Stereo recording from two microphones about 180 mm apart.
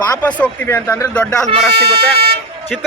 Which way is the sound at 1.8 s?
30° right (ahead or behind).